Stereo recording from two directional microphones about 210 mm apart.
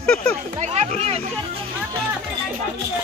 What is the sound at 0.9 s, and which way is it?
Speech, 30° right (ahead or behind).